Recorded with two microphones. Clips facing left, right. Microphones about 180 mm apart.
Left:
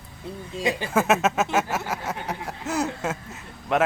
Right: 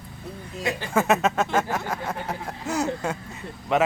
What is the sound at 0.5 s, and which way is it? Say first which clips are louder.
Speech: left 3 dB; 20° left (ahead or behind).